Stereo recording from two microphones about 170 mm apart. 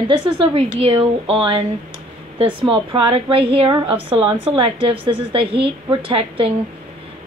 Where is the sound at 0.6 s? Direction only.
30° right (ahead or behind).